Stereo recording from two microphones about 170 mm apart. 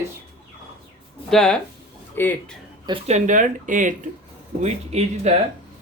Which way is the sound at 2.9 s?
40° right (ahead or behind).